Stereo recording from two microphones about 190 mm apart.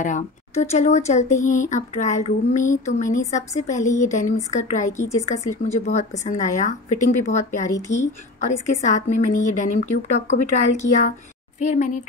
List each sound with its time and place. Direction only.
0.0 s speech: 40° left (ahead or behind)